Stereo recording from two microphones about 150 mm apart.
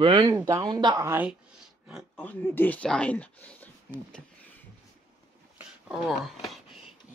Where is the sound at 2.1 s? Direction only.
10° left (ahead or behind).